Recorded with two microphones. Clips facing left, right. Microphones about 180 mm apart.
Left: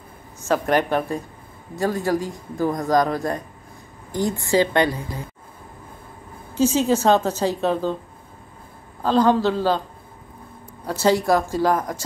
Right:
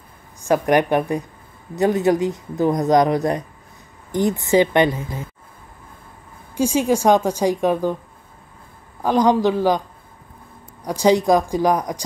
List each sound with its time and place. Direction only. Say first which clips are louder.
0.4 s a woman's voice: right 3 dB; 15° right (ahead or behind)
6.5 s a woman's voice: even; 10° right (ahead or behind)
9.0 s a woman's voice: right 1 dB; 15° right (ahead or behind)
10.8 s a woman's voice: right 3 dB; 15° right (ahead or behind)